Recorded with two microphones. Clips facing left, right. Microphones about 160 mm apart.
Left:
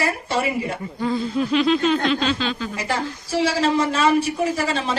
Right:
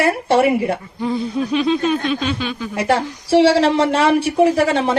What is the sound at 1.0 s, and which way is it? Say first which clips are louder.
Snicker: right 1 dB; 15° right (ahead or behind).